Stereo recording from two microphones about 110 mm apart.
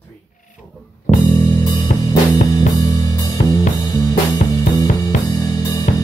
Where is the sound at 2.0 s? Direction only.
35° left (ahead or behind).